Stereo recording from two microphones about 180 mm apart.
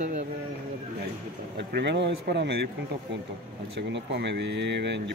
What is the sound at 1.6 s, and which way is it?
A man's voice, 70° right (ahead or behind).